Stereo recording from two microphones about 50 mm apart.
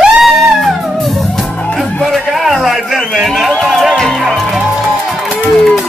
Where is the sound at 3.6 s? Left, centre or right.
Centre.